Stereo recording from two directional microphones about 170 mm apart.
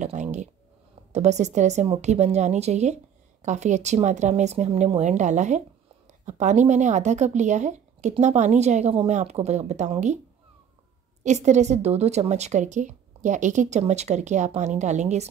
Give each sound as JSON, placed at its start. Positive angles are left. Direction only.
{"t": 0.0, "sound": "a sound", "side_deg": -45}
{"t": 1.1, "sound": "a woman's voice", "side_deg": -40}
{"t": 11.2, "sound": "a woman's voice", "side_deg": -45}